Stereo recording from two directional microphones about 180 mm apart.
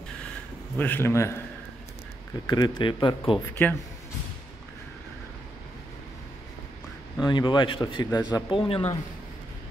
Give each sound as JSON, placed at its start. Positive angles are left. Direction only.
{"t": 0.7, "sound": "a man's voice", "side_deg": 10}
{"t": 2.4, "sound": "a man's voice", "side_deg": 20}
{"t": 3.3, "sound": "a man's voice", "side_deg": 10}
{"t": 7.2, "sound": "a man's voice", "side_deg": 25}